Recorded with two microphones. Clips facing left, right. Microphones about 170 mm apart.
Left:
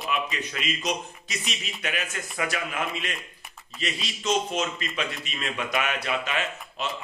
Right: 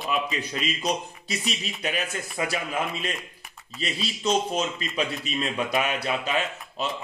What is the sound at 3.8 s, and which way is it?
A man's voice, 35° right (ahead or behind).